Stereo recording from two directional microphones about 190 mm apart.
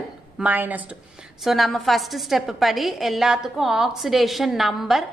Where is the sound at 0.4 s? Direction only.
10° right (ahead or behind).